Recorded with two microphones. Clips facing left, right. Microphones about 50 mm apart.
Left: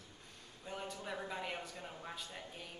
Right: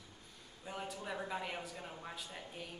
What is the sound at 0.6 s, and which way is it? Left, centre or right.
Speech, centre.